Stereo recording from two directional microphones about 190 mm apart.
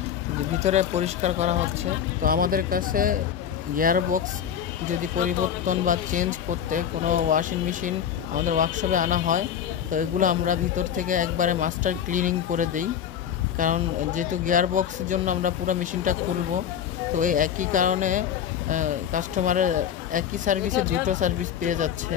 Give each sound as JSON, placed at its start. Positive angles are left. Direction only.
{"t": 0.6, "sound": "speech", "side_deg": -35}
{"t": 2.2, "sound": "speech", "side_deg": -50}
{"t": 5.7, "sound": "speech", "side_deg": -45}
{"t": 17.2, "sound": "speech", "side_deg": -45}